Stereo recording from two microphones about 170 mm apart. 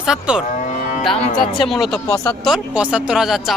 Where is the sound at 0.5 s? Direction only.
45° left (ahead or behind).